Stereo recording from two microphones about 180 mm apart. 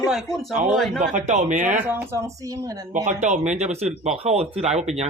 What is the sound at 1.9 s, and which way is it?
Speech, 15° right (ahead or behind).